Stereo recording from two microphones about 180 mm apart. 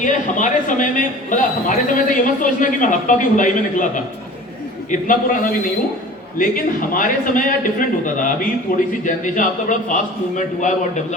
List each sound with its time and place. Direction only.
0.0 s a man's voice: 45° left (ahead or behind)
6.9 s a man's voice: 50° left (ahead or behind)